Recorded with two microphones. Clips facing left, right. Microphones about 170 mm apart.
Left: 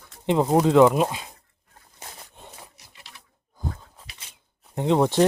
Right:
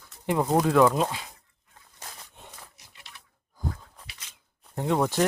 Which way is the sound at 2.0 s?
30° left (ahead or behind).